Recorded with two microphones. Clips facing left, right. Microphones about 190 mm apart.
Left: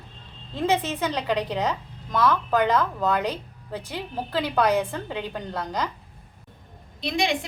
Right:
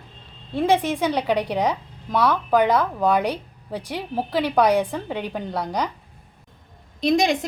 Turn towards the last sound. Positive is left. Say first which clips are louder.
# right 6 dB
turn(degrees=-45)  # may be behind; listen again after turning